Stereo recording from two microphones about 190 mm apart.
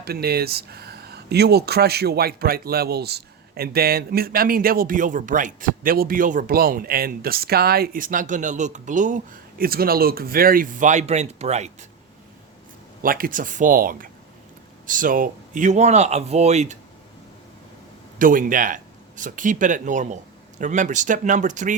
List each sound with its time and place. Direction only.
0.0 s speech: 55° right (ahead or behind); by 11.9 s 35° right (ahead or behind)
13.0 s speech: 50° right (ahead or behind)
18.2 s speech: 45° right (ahead or behind)